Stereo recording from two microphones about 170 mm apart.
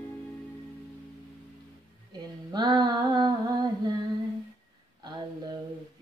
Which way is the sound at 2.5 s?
25° right (ahead or behind).